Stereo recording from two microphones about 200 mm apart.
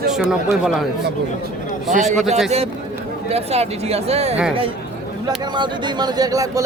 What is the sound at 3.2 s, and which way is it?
Speech, 30° right (ahead or behind).